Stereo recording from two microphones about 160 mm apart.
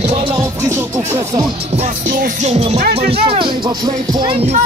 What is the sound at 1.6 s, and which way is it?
Music, 40° right (ahead or behind).